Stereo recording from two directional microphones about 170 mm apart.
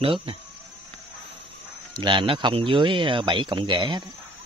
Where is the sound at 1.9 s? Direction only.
30° right (ahead or behind).